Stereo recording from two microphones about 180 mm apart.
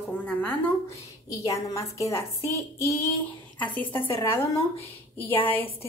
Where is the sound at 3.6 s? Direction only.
10° left (ahead or behind).